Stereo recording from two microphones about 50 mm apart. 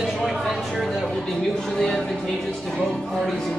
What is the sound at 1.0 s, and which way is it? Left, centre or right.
Speech, centre.